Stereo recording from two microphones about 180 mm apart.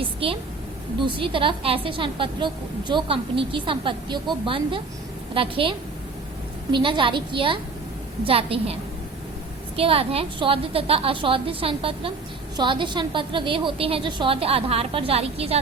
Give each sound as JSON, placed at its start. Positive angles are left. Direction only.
{"t": 0.0, "sound": "a woman's voice", "side_deg": -30}
{"t": 9.7, "sound": "a woman's voice", "side_deg": -30}